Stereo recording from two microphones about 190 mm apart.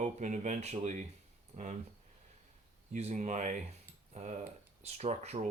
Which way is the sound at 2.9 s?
35° right (ahead or behind).